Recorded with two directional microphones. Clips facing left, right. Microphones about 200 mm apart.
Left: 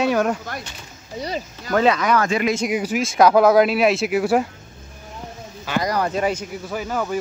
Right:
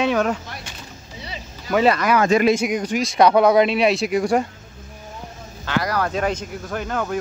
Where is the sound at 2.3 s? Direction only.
35° right (ahead or behind).